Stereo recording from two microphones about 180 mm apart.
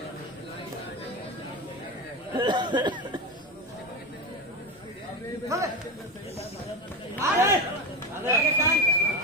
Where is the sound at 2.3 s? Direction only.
25° right (ahead or behind).